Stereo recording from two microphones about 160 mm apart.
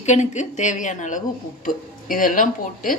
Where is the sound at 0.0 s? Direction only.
45° left (ahead or behind).